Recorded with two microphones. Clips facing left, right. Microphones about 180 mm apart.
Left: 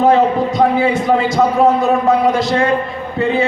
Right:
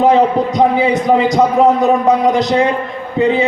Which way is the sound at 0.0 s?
20° right (ahead or behind).